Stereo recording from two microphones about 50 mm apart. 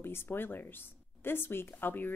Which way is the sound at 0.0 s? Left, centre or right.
Left.